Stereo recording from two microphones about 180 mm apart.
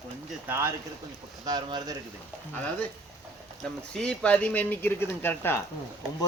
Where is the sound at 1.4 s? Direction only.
25° right (ahead or behind).